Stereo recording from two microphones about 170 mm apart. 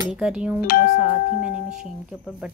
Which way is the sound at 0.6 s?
60° left (ahead or behind).